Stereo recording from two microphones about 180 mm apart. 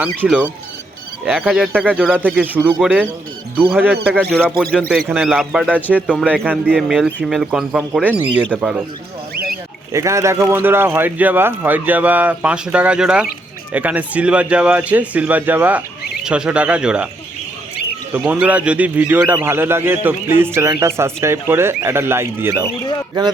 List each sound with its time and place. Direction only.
0.0 s a man's voice: 10° right (ahead or behind)
4.1 s a man's voice: centre (ahead or behind)
9.3 s rodents: 55° right (ahead or behind)
9.9 s a man's voice: 15° right (ahead or behind)
18.1 s a man's voice: 5° right (ahead or behind)